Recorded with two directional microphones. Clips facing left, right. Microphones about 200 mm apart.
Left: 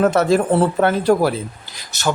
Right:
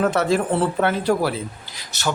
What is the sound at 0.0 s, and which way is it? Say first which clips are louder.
Speech: left 4 dB; 45° left (ahead or behind).